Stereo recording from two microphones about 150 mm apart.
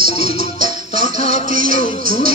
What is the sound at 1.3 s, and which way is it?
Music, 65° right (ahead or behind).